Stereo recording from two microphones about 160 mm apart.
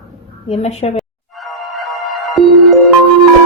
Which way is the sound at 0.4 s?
40° left (ahead or behind).